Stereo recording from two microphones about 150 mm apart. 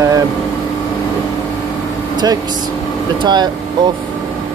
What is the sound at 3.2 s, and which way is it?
Speech, 30° right (ahead or behind).